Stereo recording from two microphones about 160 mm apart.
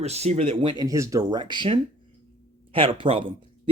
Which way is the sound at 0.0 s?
40° right (ahead or behind).